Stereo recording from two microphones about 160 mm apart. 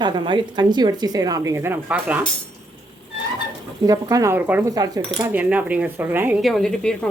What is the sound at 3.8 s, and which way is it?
Speech, 20° right (ahead or behind).